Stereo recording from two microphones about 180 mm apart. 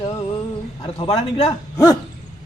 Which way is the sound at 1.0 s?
35° left (ahead or behind).